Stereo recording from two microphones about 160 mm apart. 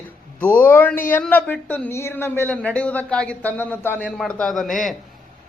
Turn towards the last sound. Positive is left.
turn(degrees=0)  # may be behind; listen again after turning